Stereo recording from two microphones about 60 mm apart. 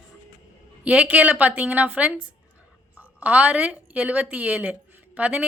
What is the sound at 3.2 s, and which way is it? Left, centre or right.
A woman's voice, right.